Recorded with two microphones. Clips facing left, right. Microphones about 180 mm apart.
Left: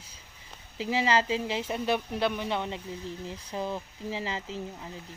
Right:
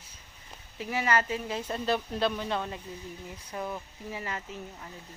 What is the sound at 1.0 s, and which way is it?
Speech, 25° left (ahead or behind).